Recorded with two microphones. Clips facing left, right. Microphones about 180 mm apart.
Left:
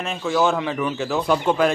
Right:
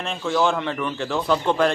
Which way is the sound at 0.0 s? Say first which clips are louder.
Left 1 dB; 5° left (ahead or behind).